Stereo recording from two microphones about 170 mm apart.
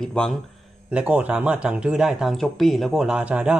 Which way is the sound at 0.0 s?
5° left (ahead or behind).